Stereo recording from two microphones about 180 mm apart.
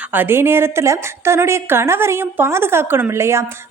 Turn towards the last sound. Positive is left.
turn(degrees=-15)  # may be behind; listen again after turning